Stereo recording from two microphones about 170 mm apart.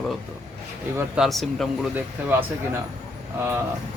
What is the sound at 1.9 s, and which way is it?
Speech, 10° right (ahead or behind).